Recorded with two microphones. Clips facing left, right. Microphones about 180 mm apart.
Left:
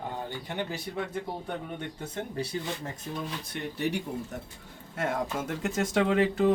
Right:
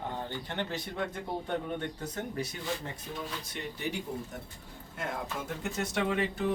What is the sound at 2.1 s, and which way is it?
Speech, 30° left (ahead or behind).